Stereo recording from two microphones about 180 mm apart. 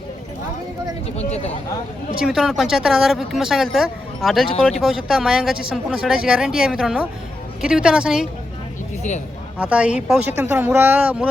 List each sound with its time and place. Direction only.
1.1 s speech: 35° left (ahead or behind)
2.2 s speech: 5° right (ahead or behind)
9.6 s speech: 5° right (ahead or behind)